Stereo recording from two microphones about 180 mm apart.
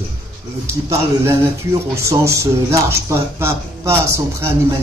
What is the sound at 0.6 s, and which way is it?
A man's voice, 15° right (ahead or behind).